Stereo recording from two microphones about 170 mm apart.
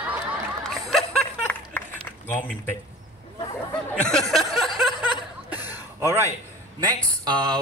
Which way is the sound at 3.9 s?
5° left (ahead or behind).